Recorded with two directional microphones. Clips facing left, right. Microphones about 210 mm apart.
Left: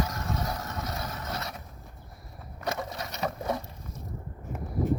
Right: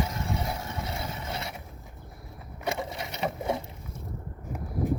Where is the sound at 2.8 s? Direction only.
25° right (ahead or behind).